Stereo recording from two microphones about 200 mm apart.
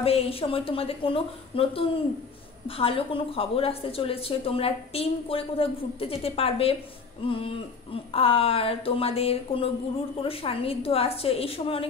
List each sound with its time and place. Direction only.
0.0 s a woman's voice: 30° left (ahead or behind)